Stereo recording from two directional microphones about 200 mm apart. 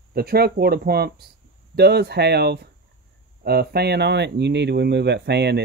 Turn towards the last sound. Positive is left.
turn(degrees=-55)  # may be behind; listen again after turning